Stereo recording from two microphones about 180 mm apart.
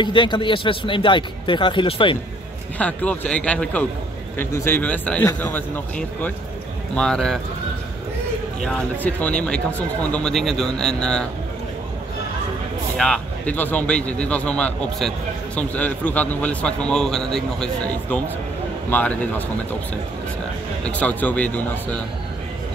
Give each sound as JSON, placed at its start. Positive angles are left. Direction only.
{"t": 0.0, "sound": "a man's voice", "side_deg": 25}
{"t": 2.8, "sound": "a man's voice", "side_deg": 5}
{"t": 9.0, "sound": "speech", "side_deg": 10}
{"t": 12.9, "sound": "a man's voice", "side_deg": 5}
{"t": 18.9, "sound": "a man's voice", "side_deg": 10}
{"t": 20.8, "sound": "a man's voice", "side_deg": 10}